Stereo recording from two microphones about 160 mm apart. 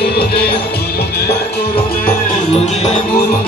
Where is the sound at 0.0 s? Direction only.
85° left.